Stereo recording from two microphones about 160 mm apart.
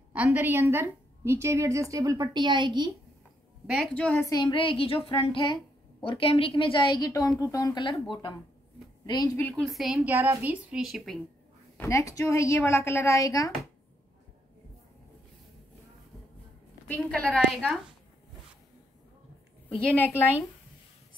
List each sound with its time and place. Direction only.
0.1 s a woman's voice: 10° right (ahead or behind); by 2.9 s 30° right (ahead or behind)
3.6 s a woman's voice: 5° right (ahead or behind)
3.9 s a woman's voice: 10° left (ahead or behind)
4.3 s a woman's voice: 30° left (ahead or behind)
9.4 s a woman's voice: 5° left (ahead or behind)
9.9 s a woman's voice: 15° right (ahead or behind)
11.7 s a sound: 10° left (ahead or behind)
12.0 s a woman's voice: 20° left (ahead or behind)
16.8 s a woman's voice: 10° left (ahead or behind)
19.9 s a woman's voice: 10° left (ahead or behind)